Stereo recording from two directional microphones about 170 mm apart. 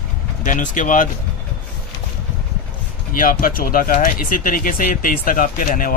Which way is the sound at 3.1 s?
55° left (ahead or behind).